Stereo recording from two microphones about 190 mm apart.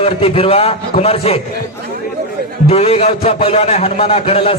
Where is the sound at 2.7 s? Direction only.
30° left (ahead or behind).